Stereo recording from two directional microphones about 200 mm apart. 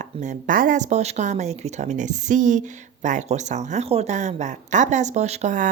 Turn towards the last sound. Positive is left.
turn(degrees=-35)  # may be behind; listen again after turning